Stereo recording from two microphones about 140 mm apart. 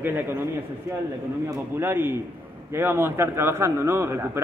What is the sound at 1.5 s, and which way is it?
A man's voice, 15° right (ahead or behind).